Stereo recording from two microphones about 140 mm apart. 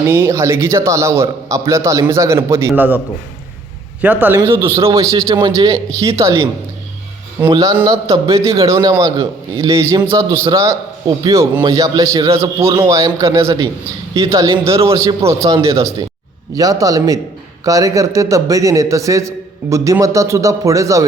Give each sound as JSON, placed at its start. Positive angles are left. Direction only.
{"t": 0.0, "sound": "a man's voice", "side_deg": -20}
{"t": 4.0, "sound": "a man's voice", "side_deg": -10}
{"t": 7.5, "sound": "a man's voice", "side_deg": -25}